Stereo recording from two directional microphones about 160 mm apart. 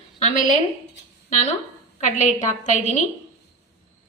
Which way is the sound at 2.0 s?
50° left (ahead or behind).